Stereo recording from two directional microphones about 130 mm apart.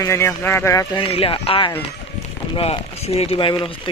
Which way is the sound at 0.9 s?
45° left (ahead or behind).